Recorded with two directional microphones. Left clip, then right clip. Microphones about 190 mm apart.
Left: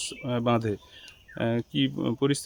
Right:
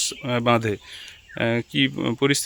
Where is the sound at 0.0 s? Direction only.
10° right (ahead or behind).